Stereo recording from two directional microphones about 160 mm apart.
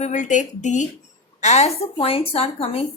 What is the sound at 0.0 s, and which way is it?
A woman's voice, 50° left (ahead or behind).